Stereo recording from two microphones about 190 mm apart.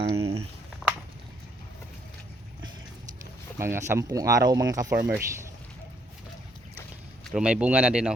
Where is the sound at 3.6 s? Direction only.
15° right (ahead or behind).